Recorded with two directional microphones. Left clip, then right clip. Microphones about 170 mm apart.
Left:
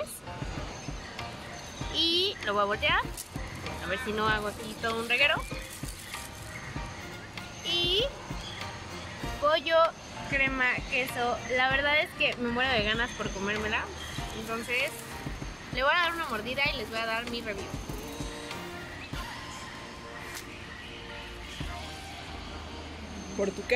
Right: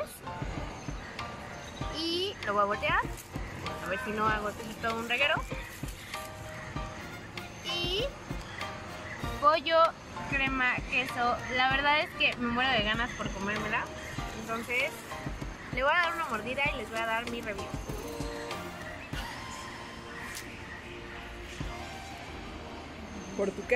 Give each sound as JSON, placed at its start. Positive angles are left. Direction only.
{"t": 2.0, "sound": "a sound", "side_deg": 0}
{"t": 2.4, "sound": "speech", "side_deg": 10}
{"t": 7.6, "sound": "music", "side_deg": 10}
{"t": 9.5, "sound": "speech", "side_deg": 20}
{"t": 23.4, "sound": "speech", "side_deg": 5}